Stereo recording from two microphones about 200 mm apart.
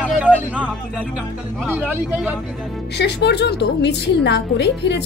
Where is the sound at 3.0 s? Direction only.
55° left (ahead or behind).